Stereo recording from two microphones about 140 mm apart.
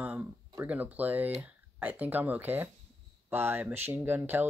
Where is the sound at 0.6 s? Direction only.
10° right (ahead or behind).